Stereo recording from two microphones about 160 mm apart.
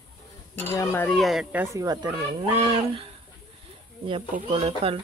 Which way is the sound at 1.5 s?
20° right (ahead or behind).